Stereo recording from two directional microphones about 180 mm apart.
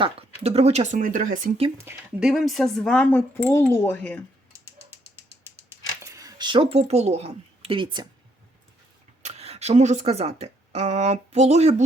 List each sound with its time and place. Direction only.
0.0 s speech: 35° right (ahead or behind)
1.8 s speech: 15° right (ahead or behind)
2.3 s speech: centre (ahead or behind)
4.5 s a sound: 15° right (ahead or behind); by 7.9 s 30° right (ahead or behind)
9.2 s speech: 35° right (ahead or behind)